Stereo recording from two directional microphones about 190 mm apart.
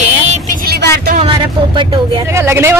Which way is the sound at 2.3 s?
15° right (ahead or behind).